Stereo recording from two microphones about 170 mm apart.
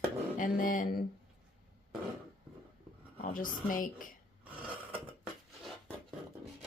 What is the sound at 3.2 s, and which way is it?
Speech, 50° left (ahead or behind).